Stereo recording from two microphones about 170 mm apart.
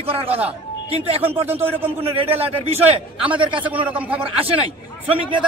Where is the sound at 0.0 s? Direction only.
35° right (ahead or behind).